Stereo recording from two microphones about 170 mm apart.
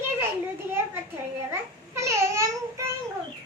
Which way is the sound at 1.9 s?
15° right (ahead or behind).